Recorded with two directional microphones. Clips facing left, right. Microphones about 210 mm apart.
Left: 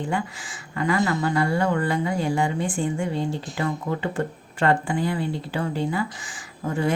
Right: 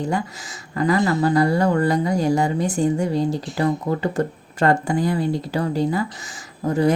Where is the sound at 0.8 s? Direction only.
35° right (ahead or behind).